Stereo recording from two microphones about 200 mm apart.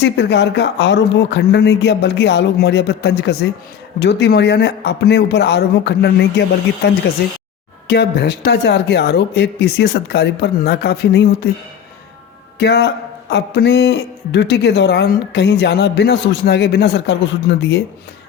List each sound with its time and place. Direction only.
0.0 s speech: 60° left (ahead or behind)
12.5 s a man's voice: 55° left (ahead or behind)